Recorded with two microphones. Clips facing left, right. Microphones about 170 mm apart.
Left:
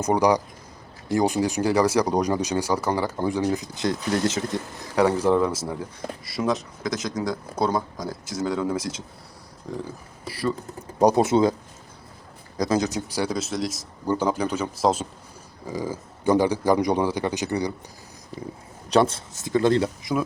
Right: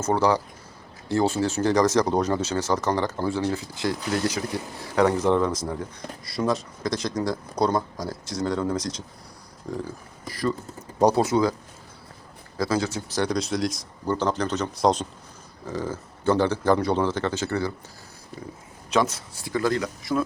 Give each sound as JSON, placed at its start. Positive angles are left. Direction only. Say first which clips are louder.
{"t": 0.0, "sound": "speech", "louder": "left 2 dB", "side_deg": 15}
{"t": 4.9, "sound": "speech", "louder": "left 1 dB", "side_deg": 10}
{"t": 10.2, "sound": "speech", "louder": "even", "side_deg": 10}
{"t": 11.0, "sound": "speech", "louder": "left 2 dB", "side_deg": 20}
{"t": 12.5, "sound": "speech", "louder": "left 2 dB", "side_deg": 20}
{"t": 18.9, "sound": "speech", "louder": "left 3 dB", "side_deg": 30}